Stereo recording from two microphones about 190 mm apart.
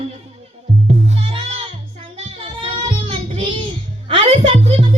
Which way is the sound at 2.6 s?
25° right (ahead or behind).